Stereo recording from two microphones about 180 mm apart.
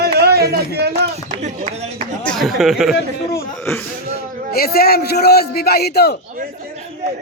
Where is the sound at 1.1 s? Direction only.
40° right (ahead or behind).